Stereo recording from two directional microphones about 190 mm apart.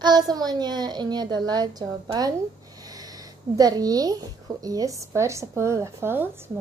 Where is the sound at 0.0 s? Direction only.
20° right (ahead or behind).